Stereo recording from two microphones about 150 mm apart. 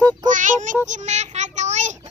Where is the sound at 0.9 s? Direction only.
50° right (ahead or behind).